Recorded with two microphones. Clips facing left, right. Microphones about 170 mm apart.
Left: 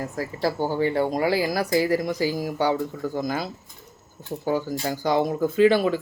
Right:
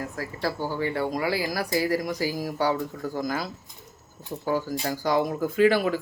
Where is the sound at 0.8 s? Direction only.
30° left (ahead or behind).